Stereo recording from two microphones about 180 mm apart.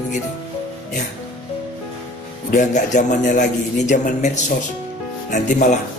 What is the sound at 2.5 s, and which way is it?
A man's voice, 40° left (ahead or behind).